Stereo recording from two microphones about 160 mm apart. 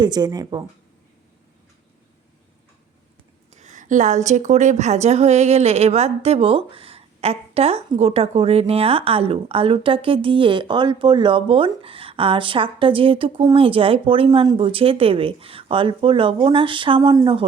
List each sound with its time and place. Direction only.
0.0 s speech: 25° right (ahead or behind)
3.5 s a woman's voice: 50° right (ahead or behind); by 17.4 s 30° right (ahead or behind)